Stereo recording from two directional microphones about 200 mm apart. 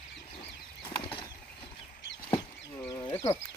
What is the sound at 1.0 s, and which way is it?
Bird flight, 25° left (ahead or behind).